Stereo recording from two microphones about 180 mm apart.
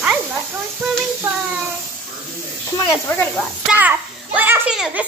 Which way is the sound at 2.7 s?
25° left (ahead or behind).